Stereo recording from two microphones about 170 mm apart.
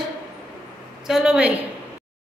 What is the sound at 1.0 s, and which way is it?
Speech, 5° right (ahead or behind).